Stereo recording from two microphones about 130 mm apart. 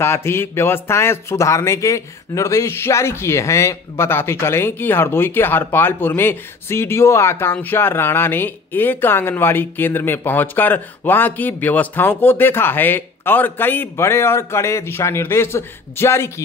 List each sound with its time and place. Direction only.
0.0 s a man's voice: 20° left (ahead or behind)